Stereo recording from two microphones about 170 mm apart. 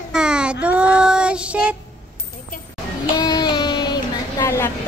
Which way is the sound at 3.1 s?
25° left (ahead or behind).